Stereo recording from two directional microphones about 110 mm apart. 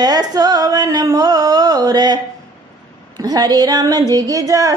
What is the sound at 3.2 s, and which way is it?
Speech, 35° right (ahead or behind).